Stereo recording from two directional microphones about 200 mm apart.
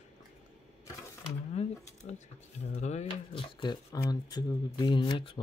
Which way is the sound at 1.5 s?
35° left (ahead or behind).